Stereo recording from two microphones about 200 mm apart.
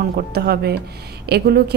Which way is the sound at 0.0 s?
50° right (ahead or behind).